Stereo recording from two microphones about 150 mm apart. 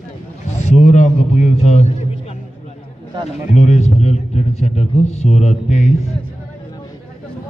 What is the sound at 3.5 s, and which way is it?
A man's voice, 50° left (ahead or behind).